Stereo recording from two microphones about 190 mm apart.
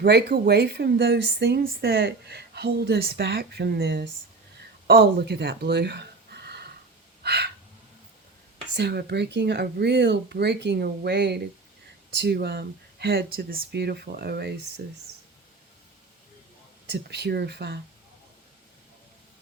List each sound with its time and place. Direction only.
0.0 s a woman's voice: 60° right (ahead or behind)
7.2 s a sound: 60° right (ahead or behind)
8.7 s a woman's voice: 60° right (ahead or behind)
16.9 s a woman's voice: 65° right (ahead or behind)